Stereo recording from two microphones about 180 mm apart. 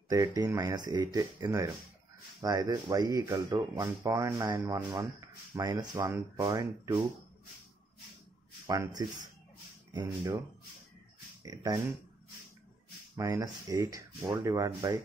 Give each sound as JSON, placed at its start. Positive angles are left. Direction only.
{"t": 0.1, "sound": "speech", "side_deg": -20}
{"t": 8.6, "sound": "speech", "side_deg": -20}
{"t": 11.4, "sound": "speech", "side_deg": -20}
{"t": 13.1, "sound": "speech", "side_deg": -20}